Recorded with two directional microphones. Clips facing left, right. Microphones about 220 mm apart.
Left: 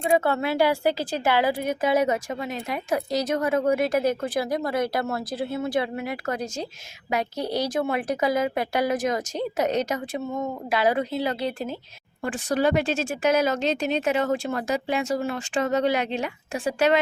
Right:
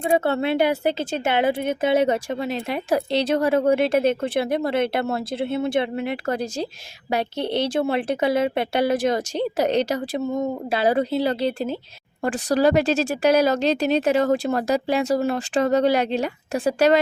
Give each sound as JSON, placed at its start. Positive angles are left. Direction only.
{"t": 0.1, "sound": "a woman's voice", "side_deg": -30}